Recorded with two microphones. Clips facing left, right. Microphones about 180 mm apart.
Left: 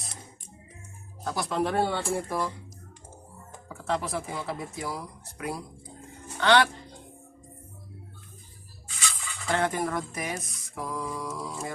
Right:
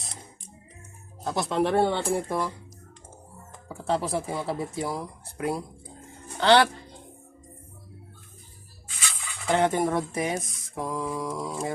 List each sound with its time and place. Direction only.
1.2 s speech: 25° right (ahead or behind)
3.7 s speech: 30° right (ahead or behind)
9.5 s speech: 25° right (ahead or behind)